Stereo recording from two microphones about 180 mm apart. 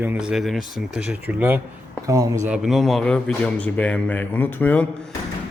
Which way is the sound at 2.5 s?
Centre (ahead or behind).